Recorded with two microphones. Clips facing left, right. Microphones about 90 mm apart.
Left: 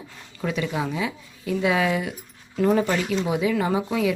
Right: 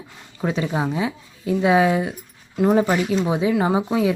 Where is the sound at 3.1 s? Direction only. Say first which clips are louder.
Right 3 dB; 30° right (ahead or behind).